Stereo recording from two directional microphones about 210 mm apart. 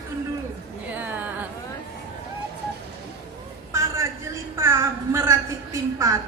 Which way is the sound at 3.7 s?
15° right (ahead or behind).